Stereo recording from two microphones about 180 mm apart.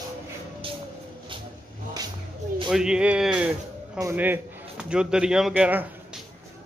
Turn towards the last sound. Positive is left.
turn(degrees=-5)  # may be behind; listen again after turning